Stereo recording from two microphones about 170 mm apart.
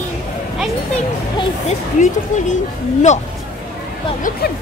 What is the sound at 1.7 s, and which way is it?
Speech, 45° left (ahead or behind).